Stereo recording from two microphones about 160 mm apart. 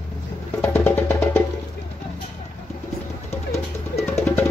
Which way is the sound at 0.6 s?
15° left (ahead or behind).